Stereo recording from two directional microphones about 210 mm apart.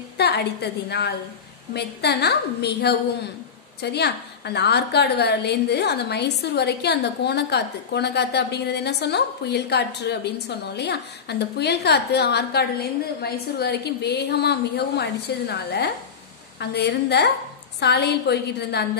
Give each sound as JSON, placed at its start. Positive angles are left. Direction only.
{"t": 0.2, "sound": "a woman's voice", "side_deg": 50}